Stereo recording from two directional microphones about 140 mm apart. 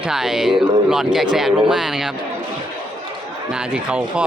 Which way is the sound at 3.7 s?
10° right (ahead or behind).